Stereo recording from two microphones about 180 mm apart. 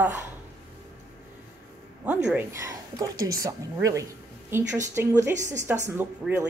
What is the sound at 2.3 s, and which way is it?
A woman's voice, 15° right (ahead or behind).